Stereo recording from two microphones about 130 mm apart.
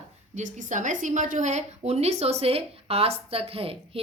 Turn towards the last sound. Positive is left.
turn(degrees=-45)  # may be behind; listen again after turning